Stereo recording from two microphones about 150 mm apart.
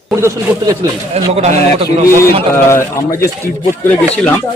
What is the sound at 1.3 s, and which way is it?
Speech, 45° right (ahead or behind).